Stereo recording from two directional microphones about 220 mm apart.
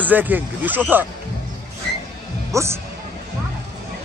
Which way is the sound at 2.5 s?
15° right (ahead or behind).